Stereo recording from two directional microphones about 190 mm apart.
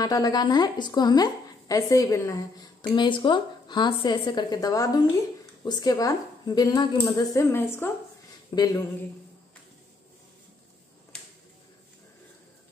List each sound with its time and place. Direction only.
0.0 s a woman's voice: 20° left (ahead or behind)